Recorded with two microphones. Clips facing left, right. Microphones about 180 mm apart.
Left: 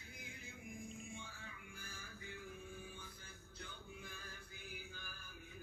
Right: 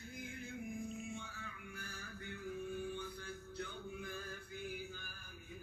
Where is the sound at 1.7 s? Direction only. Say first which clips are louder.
Right 5 dB; 70° right (ahead or behind).